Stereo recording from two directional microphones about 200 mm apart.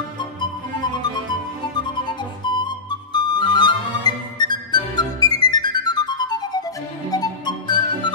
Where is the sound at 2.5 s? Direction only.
20° left (ahead or behind).